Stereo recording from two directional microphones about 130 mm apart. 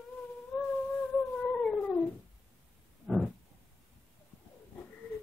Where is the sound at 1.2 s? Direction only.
5° left (ahead or behind).